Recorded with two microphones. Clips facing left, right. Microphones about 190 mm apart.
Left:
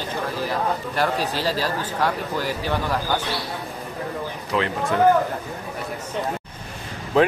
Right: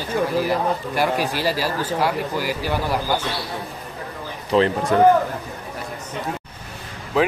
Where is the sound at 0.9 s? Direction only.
10° right (ahead or behind).